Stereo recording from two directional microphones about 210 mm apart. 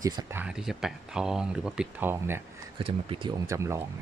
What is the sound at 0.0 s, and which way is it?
Speech, 15° right (ahead or behind).